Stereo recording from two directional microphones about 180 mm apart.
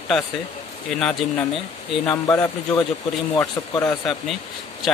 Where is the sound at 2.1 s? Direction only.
20° left (ahead or behind).